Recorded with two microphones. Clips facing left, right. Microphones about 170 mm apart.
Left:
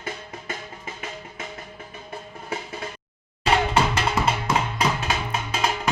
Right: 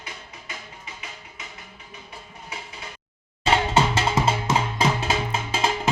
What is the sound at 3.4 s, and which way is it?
Music, 25° right (ahead or behind).